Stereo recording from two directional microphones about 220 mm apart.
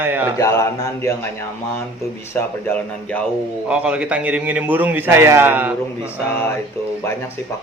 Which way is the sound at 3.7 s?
5° right (ahead or behind).